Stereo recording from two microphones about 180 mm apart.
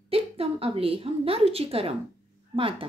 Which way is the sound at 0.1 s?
30° right (ahead or behind).